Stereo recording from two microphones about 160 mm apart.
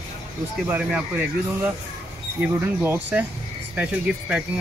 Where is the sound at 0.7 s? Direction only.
5° right (ahead or behind).